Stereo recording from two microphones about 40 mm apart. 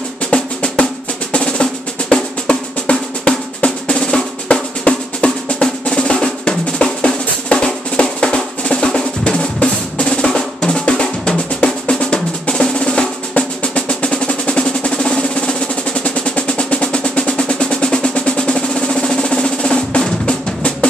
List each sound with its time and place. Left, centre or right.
0.3 s drum: left
13.4 s drum roll: left
15.0 s drum: centre